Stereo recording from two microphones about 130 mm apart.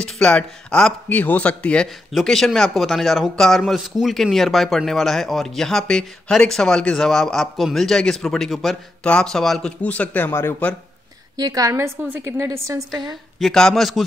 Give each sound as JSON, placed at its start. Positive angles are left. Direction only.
{"t": 0.0, "sound": "speech", "side_deg": 5}
{"t": 11.3, "sound": "a woman's voice", "side_deg": -30}
{"t": 13.4, "sound": "speech", "side_deg": 5}